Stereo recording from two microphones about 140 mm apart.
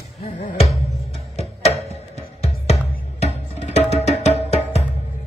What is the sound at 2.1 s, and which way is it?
Music, 50° left (ahead or behind).